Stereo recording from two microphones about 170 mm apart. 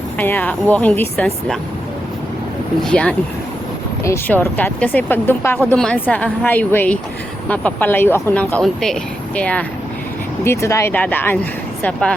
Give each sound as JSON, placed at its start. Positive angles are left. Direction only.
{"t": 0.2, "sound": "speech", "side_deg": 10}
{"t": 2.8, "sound": "speech", "side_deg": 5}